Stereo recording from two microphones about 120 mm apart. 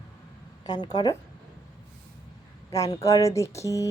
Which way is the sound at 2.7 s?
30° left (ahead or behind).